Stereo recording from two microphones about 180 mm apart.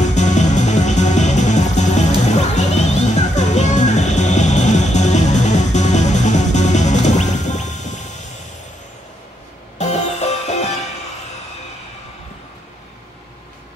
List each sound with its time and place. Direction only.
0.0 s music: 40° left (ahead or behind)
9.8 s music: 35° left (ahead or behind)